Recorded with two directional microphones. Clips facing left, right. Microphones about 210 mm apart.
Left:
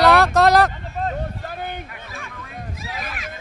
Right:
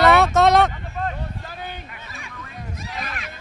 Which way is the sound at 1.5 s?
55° left (ahead or behind).